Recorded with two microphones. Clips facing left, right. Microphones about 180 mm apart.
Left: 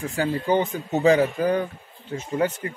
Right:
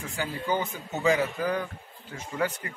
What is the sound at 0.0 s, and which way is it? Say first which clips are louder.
Speech: left 8 dB; 35° left (ahead or behind).